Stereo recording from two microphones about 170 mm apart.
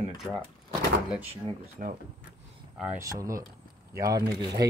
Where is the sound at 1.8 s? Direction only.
50° right (ahead or behind).